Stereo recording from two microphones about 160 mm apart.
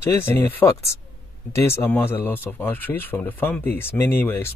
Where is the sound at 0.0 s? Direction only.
15° left (ahead or behind).